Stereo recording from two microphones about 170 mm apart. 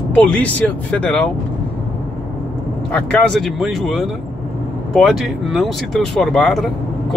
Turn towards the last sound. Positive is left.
turn(degrees=0)  # may be behind; listen again after turning